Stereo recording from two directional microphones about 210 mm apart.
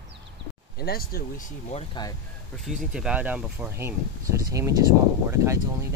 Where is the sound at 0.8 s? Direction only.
45° left (ahead or behind).